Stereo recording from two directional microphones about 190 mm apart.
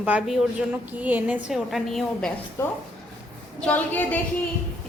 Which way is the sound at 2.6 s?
15° left (ahead or behind).